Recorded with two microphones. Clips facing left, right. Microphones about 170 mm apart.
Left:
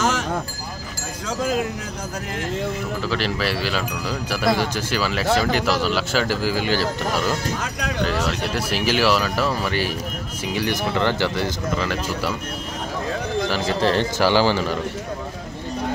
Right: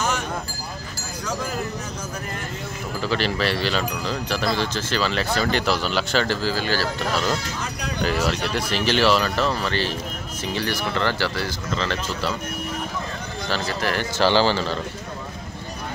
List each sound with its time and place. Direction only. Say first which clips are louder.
3.0 s speech: right 3 dB; centre (ahead or behind); by 7.2 s 15° left (ahead or behind)
8.2 s speech: even; centre (ahead or behind)
13.7 s speech: left 7 dB; 30° left (ahead or behind)
14.1 s speech: left 1 dB; 10° left (ahead or behind)